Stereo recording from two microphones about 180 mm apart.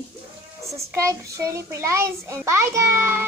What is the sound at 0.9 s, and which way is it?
A child's voice, 15° right (ahead or behind).